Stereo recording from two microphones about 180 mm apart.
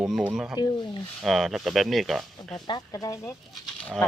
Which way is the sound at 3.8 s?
5° left (ahead or behind).